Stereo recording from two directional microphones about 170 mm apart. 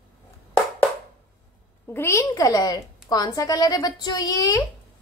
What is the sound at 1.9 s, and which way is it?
A woman's voice, 15° left (ahead or behind).